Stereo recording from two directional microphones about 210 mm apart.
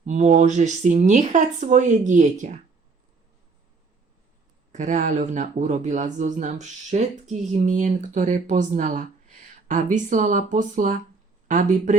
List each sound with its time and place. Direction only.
0.0 s speech: 35° right (ahead or behind)
4.7 s speech: 35° right (ahead or behind)